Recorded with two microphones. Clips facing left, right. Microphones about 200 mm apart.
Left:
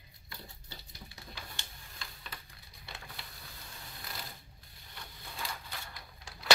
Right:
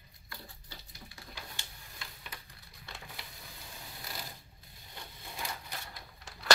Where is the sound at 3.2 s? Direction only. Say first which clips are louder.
Right 1 dB; 15° right (ahead or behind).